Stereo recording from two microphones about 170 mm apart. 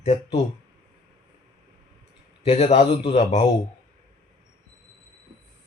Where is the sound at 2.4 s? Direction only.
35° left (ahead or behind).